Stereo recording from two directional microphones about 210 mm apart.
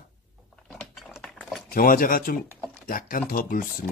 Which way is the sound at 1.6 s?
45° left (ahead or behind).